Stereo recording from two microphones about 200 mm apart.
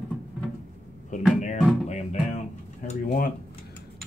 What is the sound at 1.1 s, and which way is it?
Music, 40° left (ahead or behind).